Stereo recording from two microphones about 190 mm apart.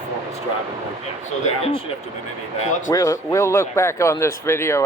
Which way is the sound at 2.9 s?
15° left (ahead or behind).